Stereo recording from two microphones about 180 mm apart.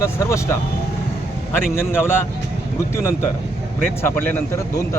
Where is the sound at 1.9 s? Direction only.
10° left (ahead or behind).